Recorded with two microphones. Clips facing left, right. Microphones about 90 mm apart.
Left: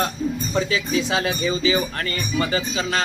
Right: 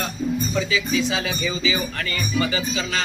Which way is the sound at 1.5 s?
35° left (ahead or behind).